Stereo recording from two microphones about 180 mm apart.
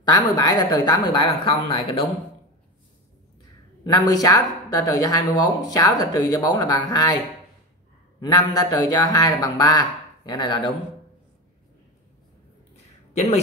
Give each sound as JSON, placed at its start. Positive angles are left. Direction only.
{"t": 0.0, "sound": "speech", "side_deg": 25}
{"t": 3.8, "sound": "speech", "side_deg": 20}
{"t": 8.2, "sound": "speech", "side_deg": 20}
{"t": 12.7, "sound": "a sound", "side_deg": 35}